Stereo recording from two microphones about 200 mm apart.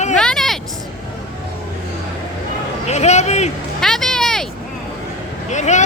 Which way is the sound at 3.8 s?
Centre (ahead or behind).